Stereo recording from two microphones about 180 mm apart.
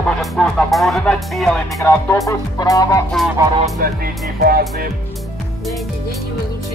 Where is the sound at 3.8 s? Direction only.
55° right (ahead or behind).